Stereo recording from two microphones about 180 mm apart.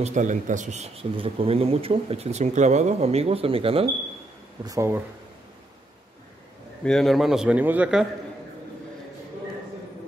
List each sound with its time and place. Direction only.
0.0 s a man's voice: 45° right (ahead or behind)
4.6 s speech: 15° right (ahead or behind)
6.8 s a man's voice: 5° left (ahead or behind)